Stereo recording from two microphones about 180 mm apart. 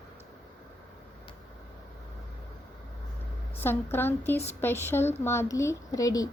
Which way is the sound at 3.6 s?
15° left (ahead or behind).